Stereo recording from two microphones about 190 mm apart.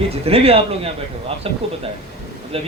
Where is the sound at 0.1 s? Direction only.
30° right (ahead or behind).